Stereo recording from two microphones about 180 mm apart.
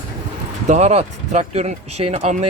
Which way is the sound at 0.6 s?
40° right (ahead or behind).